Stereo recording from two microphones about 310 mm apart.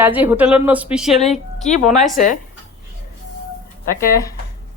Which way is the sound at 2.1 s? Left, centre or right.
Left.